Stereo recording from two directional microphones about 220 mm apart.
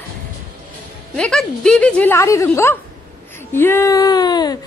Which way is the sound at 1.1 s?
5° left (ahead or behind).